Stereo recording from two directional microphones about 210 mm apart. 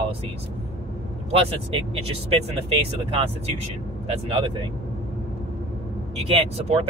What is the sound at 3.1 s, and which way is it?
Speech, 25° right (ahead or behind).